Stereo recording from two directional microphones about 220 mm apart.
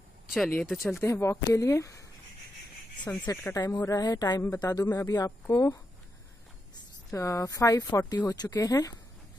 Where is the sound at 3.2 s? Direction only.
15° left (ahead or behind).